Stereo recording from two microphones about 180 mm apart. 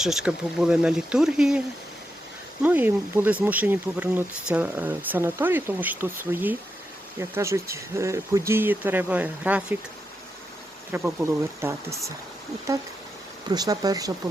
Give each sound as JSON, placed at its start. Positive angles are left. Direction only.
{"t": 0.0, "sound": "speech", "side_deg": -5}
{"t": 2.6, "sound": "speech", "side_deg": -10}
{"t": 10.9, "sound": "speech", "side_deg": -15}